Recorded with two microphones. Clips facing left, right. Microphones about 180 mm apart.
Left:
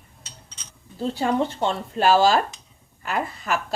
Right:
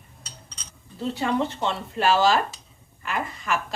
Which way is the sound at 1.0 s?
30° left (ahead or behind).